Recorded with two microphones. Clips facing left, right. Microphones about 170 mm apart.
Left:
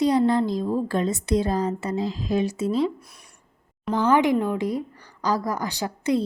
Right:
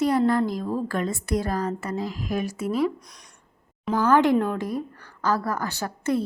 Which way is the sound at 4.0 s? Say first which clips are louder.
Even; 15° left (ahead or behind).